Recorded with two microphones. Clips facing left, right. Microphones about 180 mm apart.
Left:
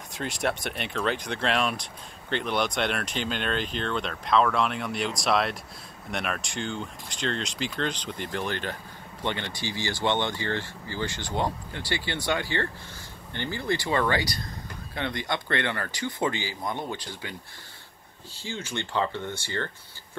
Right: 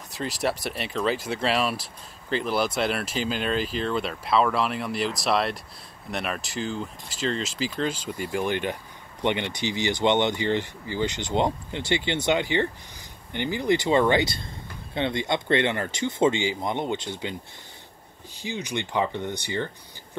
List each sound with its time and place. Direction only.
0.1 s speech: centre (ahead or behind); by 17.4 s 20° right (ahead or behind)
18.4 s speech: 15° right (ahead or behind)